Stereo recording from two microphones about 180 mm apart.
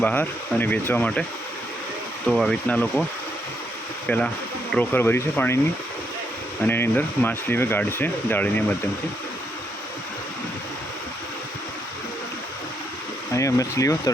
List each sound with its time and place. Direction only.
0.0 s speech: 10° left (ahead or behind)
2.2 s speech: centre (ahead or behind)
4.1 s speech: 10° left (ahead or behind)
6.7 s speech: 10° left (ahead or behind)
13.3 s speech: 15° left (ahead or behind)